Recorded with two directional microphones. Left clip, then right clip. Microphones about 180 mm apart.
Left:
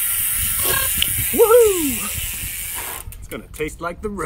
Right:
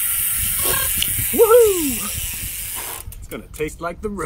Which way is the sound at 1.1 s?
10° left (ahead or behind).